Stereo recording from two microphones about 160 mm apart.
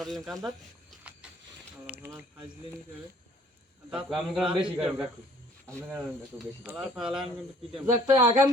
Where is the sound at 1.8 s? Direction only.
10° right (ahead or behind).